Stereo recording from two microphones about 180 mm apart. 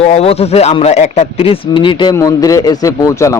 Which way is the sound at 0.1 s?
35° left (ahead or behind).